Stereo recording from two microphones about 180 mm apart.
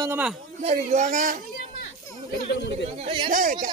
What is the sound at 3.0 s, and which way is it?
Speech, 30° right (ahead or behind).